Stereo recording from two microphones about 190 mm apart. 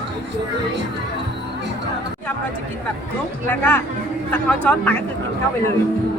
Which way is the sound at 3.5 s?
10° left (ahead or behind).